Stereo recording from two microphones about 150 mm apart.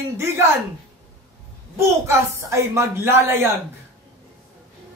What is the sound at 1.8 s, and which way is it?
Speech, 20° right (ahead or behind).